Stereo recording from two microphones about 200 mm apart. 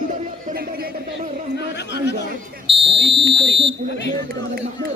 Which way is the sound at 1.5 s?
60° left (ahead or behind).